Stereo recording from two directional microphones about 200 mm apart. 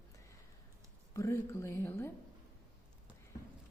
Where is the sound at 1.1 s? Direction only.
15° left (ahead or behind).